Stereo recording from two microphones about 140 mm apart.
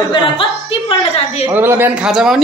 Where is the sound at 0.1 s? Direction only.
40° left (ahead or behind).